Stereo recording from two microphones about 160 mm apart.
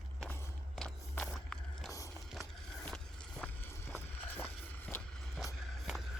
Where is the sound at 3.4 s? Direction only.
15° left (ahead or behind).